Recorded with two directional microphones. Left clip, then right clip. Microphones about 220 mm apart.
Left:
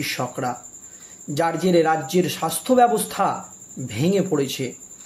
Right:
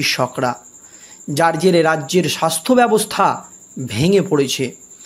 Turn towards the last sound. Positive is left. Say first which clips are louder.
# right 6 dB
turn(degrees=-40)  # may be behind; listen again after turning